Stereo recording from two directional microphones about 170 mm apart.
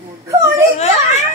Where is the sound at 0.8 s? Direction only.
40° left (ahead or behind).